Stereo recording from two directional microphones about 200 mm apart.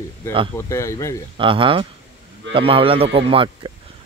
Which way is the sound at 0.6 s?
15° left (ahead or behind).